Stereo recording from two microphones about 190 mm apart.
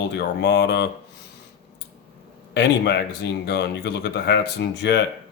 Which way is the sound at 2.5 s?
60° left (ahead or behind).